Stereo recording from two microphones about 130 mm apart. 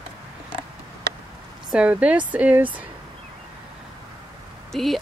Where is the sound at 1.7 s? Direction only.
10° right (ahead or behind).